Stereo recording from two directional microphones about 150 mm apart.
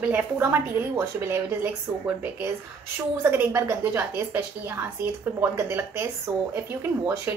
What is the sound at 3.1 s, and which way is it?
A woman's voice, 15° right (ahead or behind).